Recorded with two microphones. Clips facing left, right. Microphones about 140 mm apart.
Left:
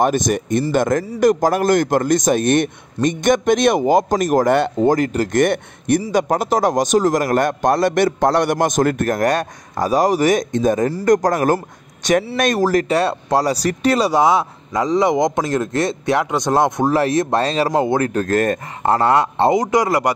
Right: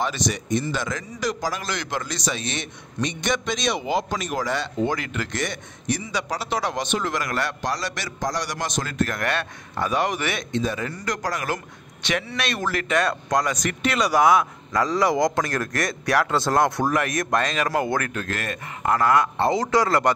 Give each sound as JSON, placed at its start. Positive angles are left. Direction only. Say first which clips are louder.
{"t": 0.0, "sound": "speech", "louder": "left 9 dB", "side_deg": 50}
{"t": 4.7, "sound": "speech", "louder": "left 9 dB", "side_deg": 40}
{"t": 18.1, "sound": "speech", "louder": "left 12 dB", "side_deg": 45}
{"t": 18.9, "sound": "speech", "louder": "left 4 dB", "side_deg": 30}